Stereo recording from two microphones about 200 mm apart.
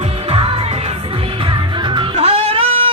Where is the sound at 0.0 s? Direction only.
30° right (ahead or behind).